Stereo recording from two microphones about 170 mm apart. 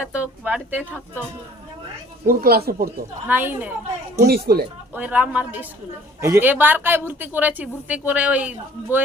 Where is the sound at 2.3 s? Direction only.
65° right (ahead or behind).